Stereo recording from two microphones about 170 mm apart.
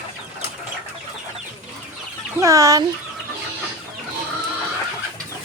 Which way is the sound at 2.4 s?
20° right (ahead or behind).